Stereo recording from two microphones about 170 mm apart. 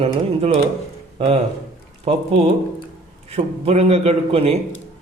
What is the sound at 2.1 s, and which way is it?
Speech, 40° right (ahead or behind).